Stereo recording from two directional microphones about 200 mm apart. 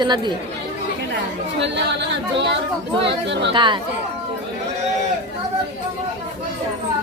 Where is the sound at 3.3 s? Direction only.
60° right (ahead or behind).